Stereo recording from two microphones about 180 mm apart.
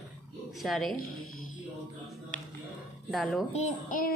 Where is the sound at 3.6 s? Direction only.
50° left (ahead or behind).